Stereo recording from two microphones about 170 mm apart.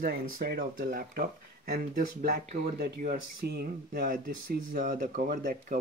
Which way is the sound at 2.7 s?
60° right (ahead or behind).